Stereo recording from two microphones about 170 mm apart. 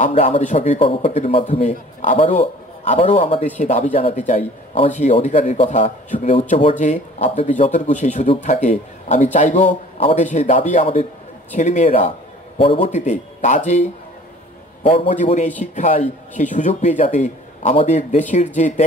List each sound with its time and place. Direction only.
0.1 s a man's voice: 35° left (ahead or behind)
9.9 s a man's voice: 35° left (ahead or behind)
10.2 s speech: 45° left (ahead or behind)
10.8 s a man's voice: 35° left (ahead or behind)
12.6 s speech: 35° left (ahead or behind)
14.8 s a man's voice: 30° left (ahead or behind)
15.1 s speech: 45° left (ahead or behind)